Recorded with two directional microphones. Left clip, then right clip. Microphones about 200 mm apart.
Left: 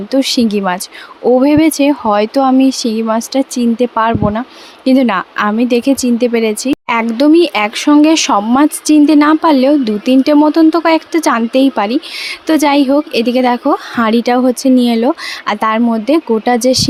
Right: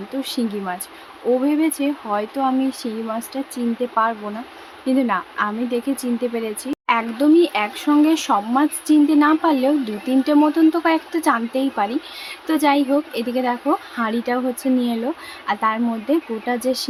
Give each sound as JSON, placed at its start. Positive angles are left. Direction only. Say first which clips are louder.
{"t": 0.1, "sound": "speech", "louder": "left 13 dB", "side_deg": 45}